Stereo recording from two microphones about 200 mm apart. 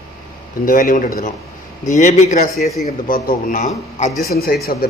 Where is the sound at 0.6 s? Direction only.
40° left (ahead or behind).